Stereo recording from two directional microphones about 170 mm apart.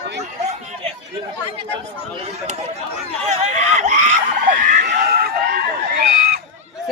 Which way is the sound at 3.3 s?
40° right (ahead or behind).